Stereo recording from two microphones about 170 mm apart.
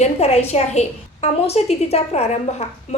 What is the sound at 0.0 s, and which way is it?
A woman's voice, 40° left (ahead or behind).